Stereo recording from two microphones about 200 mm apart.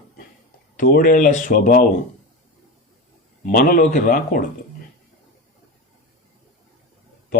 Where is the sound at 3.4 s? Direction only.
45° left (ahead or behind).